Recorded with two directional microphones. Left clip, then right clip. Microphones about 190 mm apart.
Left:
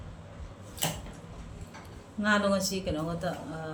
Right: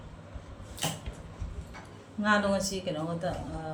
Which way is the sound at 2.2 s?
15° left (ahead or behind).